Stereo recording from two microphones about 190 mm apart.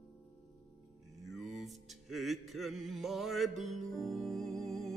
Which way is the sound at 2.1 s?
Centre (ahead or behind).